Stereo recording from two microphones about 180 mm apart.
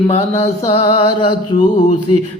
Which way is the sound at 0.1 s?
35° left (ahead or behind).